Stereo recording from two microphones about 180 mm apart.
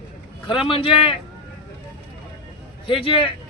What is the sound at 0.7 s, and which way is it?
Speech, 30° left (ahead or behind).